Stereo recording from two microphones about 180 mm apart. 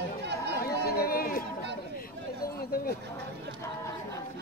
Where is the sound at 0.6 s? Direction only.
60° left (ahead or behind).